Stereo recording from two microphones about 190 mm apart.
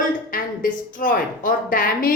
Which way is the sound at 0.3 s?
45° left (ahead or behind).